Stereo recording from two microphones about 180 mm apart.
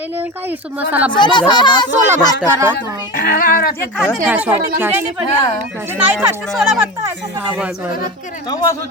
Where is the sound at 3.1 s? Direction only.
55° left (ahead or behind).